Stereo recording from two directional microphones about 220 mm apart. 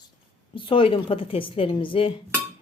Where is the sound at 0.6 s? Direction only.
25° left (ahead or behind).